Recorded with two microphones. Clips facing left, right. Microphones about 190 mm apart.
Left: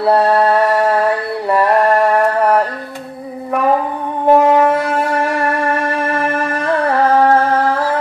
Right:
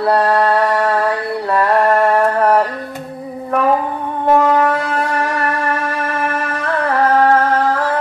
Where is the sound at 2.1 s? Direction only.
10° left (ahead or behind).